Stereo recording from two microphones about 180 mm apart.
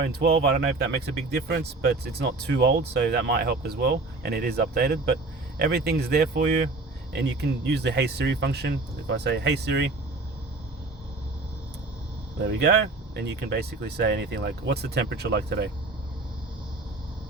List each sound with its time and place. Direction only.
0.0 s speech: 60° right (ahead or behind)
12.4 s speech: 70° right (ahead or behind)